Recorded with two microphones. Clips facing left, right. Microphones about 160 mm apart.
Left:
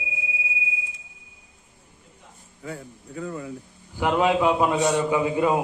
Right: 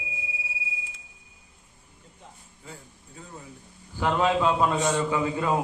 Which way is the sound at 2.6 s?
75° left (ahead or behind).